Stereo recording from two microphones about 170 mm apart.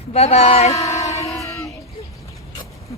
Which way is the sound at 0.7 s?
20° left (ahead or behind).